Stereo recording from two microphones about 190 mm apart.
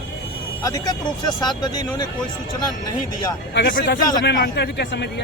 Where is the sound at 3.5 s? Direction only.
65° left (ahead or behind).